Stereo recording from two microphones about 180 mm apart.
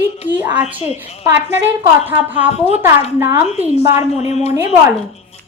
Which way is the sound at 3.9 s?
35° left (ahead or behind).